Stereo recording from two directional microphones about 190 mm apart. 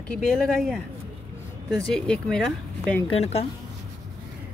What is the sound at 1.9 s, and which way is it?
Speech, 5° left (ahead or behind).